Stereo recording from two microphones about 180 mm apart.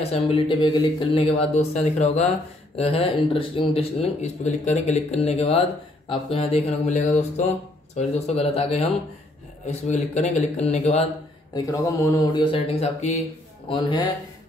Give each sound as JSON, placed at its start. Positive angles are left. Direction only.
{"t": 0.0, "sound": "speech", "side_deg": 35}
{"t": 11.5, "sound": "speech", "side_deg": 20}
{"t": 13.7, "sound": "speech", "side_deg": 25}